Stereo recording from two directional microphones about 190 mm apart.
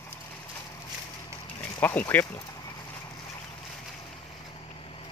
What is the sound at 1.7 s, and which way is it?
Speech, 10° left (ahead or behind).